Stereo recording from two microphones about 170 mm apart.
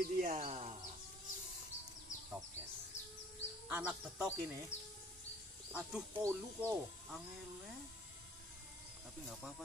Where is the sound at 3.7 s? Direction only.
5° right (ahead or behind).